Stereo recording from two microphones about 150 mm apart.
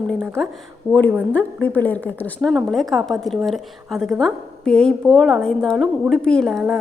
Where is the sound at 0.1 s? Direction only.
5° left (ahead or behind).